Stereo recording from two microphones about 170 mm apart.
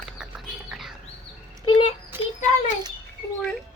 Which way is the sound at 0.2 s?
5° right (ahead or behind).